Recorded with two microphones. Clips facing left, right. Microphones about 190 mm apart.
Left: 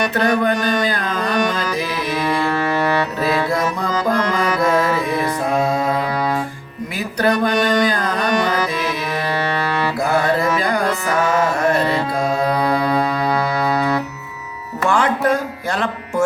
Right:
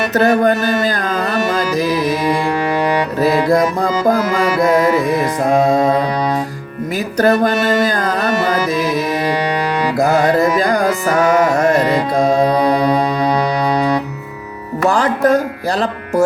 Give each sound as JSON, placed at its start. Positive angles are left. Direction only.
{"t": 0.1, "sound": "mantra", "side_deg": -45}
{"t": 1.3, "sound": "music", "side_deg": -5}
{"t": 1.7, "sound": "music", "side_deg": -45}
{"t": 2.2, "sound": "music", "side_deg": -15}
{"t": 5.4, "sound": "music", "side_deg": -45}
{"t": 7.2, "sound": "mantra", "side_deg": -45}
{"t": 7.5, "sound": "music", "side_deg": -5}
{"t": 7.9, "sound": "music", "side_deg": -45}
{"t": 8.3, "sound": "music", "side_deg": -5}
{"t": 11.2, "sound": "music", "side_deg": -45}
{"t": 11.8, "sound": "music", "side_deg": -15}
{"t": 14.8, "sound": "music", "side_deg": -35}